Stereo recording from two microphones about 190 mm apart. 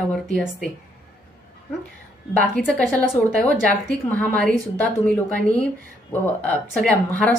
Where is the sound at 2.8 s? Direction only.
5° left (ahead or behind).